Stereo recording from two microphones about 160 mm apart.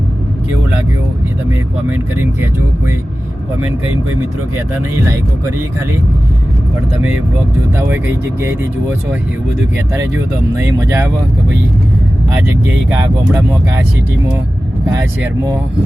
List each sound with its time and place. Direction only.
1.9 s speech: 15° right (ahead or behind)
4.5 s speech: 15° right (ahead or behind)
7.8 s speech: 15° right (ahead or behind)
9.7 s speech: 15° right (ahead or behind)
12.3 s speech: 10° right (ahead or behind)
14.9 s speech: 20° right (ahead or behind)